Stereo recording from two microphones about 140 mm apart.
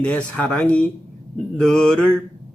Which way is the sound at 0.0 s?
10° left (ahead or behind).